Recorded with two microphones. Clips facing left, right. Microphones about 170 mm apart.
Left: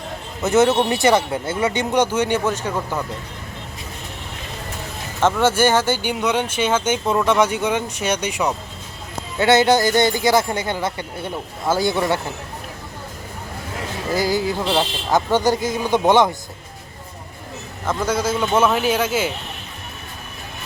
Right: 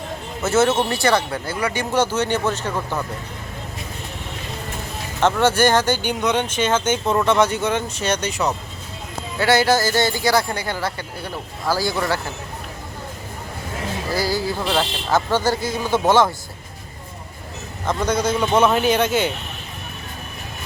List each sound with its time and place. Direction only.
0.4 s speech: 15° left (ahead or behind)
5.2 s speech: 10° left (ahead or behind)
14.1 s speech: 20° left (ahead or behind)
17.8 s speech: 5° left (ahead or behind)